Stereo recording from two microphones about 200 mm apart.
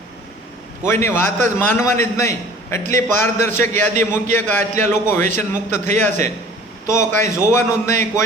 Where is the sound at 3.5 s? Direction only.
40° right (ahead or behind).